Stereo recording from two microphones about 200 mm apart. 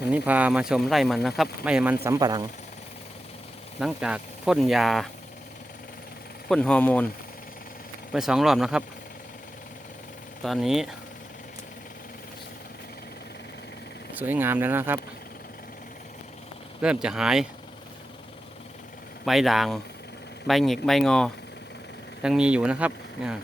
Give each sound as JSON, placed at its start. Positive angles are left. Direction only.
{"t": 0.1, "sound": "speech", "side_deg": -5}
{"t": 2.0, "sound": "speech", "side_deg": -20}
{"t": 3.8, "sound": "speech", "side_deg": -5}
{"t": 6.5, "sound": "speech", "side_deg": 5}
{"t": 8.1, "sound": "speech", "side_deg": 0}
{"t": 10.4, "sound": "speech", "side_deg": 0}
{"t": 14.2, "sound": "speech", "side_deg": -10}
{"t": 16.8, "sound": "speech", "side_deg": -5}
{"t": 19.2, "sound": "speech", "side_deg": 0}